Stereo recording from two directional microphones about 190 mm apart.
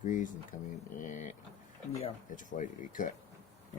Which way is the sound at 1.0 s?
40° left (ahead or behind).